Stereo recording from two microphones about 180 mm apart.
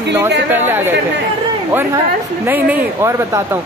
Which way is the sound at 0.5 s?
10° right (ahead or behind).